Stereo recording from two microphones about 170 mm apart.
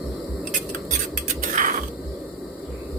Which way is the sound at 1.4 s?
50° right (ahead or behind).